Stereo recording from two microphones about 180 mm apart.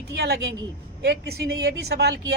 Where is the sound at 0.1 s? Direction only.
65° right (ahead or behind).